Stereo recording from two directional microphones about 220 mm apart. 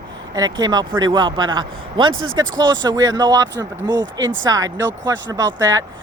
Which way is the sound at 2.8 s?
15° right (ahead or behind).